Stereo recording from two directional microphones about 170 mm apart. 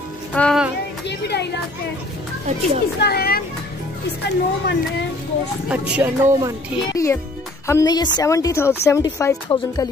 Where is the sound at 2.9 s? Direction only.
70° left (ahead or behind).